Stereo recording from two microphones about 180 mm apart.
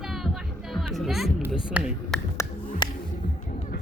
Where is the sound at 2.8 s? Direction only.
25° left (ahead or behind).